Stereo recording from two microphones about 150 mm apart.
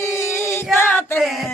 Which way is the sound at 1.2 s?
Centre (ahead or behind).